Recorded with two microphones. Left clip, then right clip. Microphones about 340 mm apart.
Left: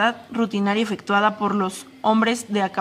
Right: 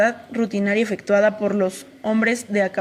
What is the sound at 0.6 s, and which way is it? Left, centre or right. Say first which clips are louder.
Speech: right 2 dB; centre.